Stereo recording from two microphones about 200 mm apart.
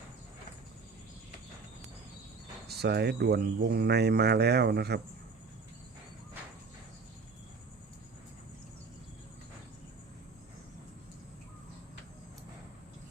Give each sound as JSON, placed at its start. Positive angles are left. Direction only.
{"t": 2.6, "sound": "speech", "side_deg": -55}